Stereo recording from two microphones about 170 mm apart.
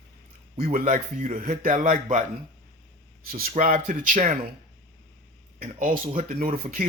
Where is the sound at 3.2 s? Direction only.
60° right (ahead or behind).